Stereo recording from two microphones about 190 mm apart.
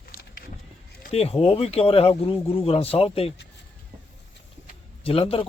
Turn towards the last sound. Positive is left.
turn(degrees=30)  # may be behind; listen again after turning